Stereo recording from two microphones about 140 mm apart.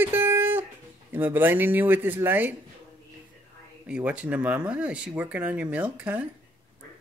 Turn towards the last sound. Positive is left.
turn(degrees=-10)  # may be behind; listen again after turning